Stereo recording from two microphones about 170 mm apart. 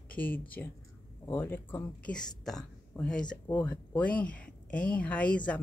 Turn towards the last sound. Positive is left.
turn(degrees=5)  # may be behind; listen again after turning